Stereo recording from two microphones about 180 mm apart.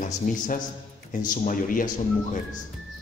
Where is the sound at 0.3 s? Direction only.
45° left (ahead or behind).